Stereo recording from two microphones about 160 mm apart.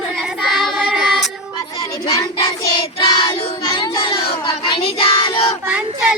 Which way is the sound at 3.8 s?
30° left (ahead or behind).